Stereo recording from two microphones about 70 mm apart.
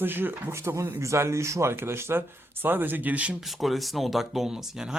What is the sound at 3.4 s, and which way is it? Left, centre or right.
Speech, centre.